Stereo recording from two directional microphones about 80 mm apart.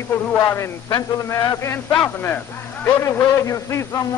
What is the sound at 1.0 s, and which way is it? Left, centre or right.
Speech, left.